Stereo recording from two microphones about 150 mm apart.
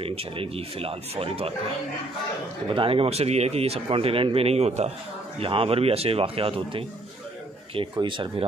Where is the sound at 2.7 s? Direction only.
35° right (ahead or behind).